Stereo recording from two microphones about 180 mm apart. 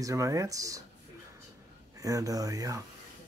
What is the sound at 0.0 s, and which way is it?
Speech, 15° right (ahead or behind).